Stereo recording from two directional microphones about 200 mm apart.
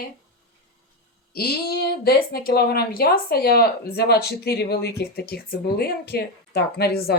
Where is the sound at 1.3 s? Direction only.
50° left (ahead or behind).